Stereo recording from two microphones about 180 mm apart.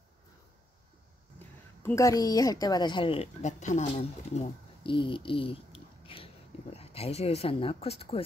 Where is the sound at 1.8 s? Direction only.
15° left (ahead or behind).